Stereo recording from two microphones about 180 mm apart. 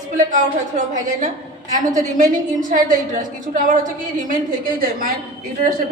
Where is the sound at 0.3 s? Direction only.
45° right (ahead or behind).